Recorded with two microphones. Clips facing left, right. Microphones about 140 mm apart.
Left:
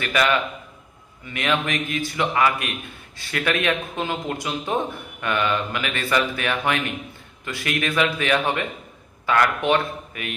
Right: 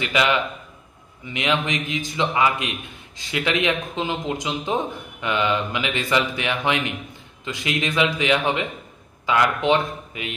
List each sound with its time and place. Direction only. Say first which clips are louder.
0.0 s a man's voice: even; 15° right (ahead or behind)